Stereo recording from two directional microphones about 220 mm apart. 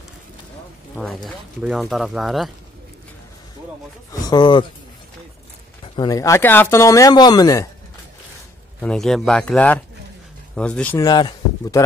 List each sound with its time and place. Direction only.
0.9 s speech: centre (ahead or behind)
4.1 s speech: 20° left (ahead or behind)
5.9 s speech: 15° left (ahead or behind)
8.8 s speech: centre (ahead or behind); by 11.8 s 20° left (ahead or behind)